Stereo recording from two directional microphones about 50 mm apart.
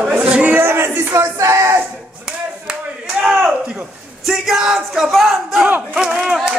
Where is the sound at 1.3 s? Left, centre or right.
Right.